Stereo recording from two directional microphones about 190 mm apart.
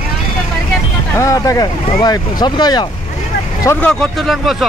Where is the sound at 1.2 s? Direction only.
15° left (ahead or behind).